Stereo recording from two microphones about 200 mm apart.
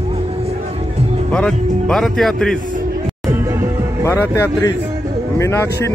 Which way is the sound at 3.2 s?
15° right (ahead or behind).